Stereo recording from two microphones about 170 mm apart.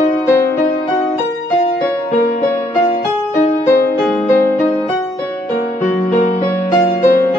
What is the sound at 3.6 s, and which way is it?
Music, 15° left (ahead or behind).